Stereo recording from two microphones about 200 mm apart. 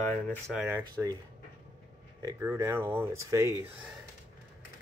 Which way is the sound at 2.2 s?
15° right (ahead or behind).